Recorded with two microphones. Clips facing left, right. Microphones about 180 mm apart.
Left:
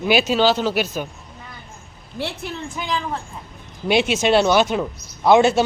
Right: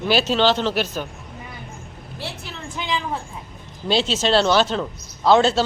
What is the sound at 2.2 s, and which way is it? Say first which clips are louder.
Speech: left 6 dB; 60° left (ahead or behind).